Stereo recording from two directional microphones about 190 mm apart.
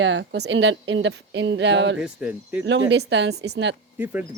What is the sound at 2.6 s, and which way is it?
Speech, 70° right (ahead or behind).